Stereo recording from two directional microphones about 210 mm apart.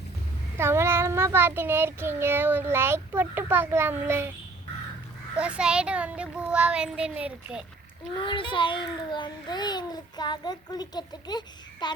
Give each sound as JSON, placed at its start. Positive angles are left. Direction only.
{"t": 0.5, "sound": "child singing", "side_deg": -10}
{"t": 5.4, "sound": "a child's voice", "side_deg": -5}
{"t": 8.2, "sound": "a child's voice", "side_deg": 25}